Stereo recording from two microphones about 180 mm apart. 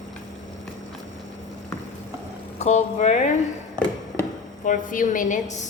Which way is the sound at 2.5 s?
40° left (ahead or behind).